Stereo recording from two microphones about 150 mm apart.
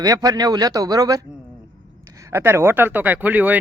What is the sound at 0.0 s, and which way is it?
A man's voice, 25° right (ahead or behind).